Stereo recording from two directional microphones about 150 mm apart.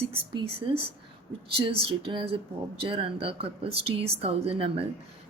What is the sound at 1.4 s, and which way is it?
A woman's voice, 35° right (ahead or behind).